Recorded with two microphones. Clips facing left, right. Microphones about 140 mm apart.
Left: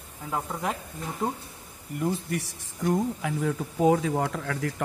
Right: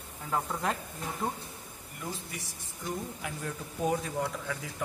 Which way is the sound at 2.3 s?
75° left (ahead or behind).